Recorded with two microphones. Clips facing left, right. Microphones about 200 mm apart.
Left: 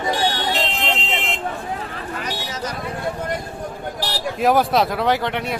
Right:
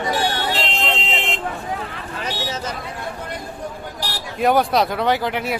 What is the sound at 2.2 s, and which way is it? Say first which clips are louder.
Vehicle: right 4 dB; 25° right (ahead or behind).